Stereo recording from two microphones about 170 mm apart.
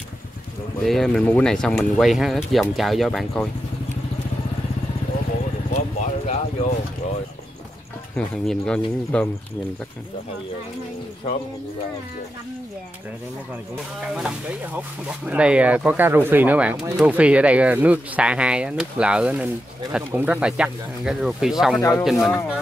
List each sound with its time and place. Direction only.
0.8 s speech: centre (ahead or behind)
5.7 s vehicle: 45° left (ahead or behind)
8.5 s speech: 5° left (ahead or behind)
14.0 s speech: 5° right (ahead or behind)
21.7 s speech: 20° left (ahead or behind)
22.2 s speech: centre (ahead or behind)